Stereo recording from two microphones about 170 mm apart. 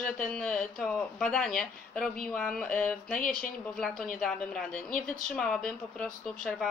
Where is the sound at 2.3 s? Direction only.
5° left (ahead or behind).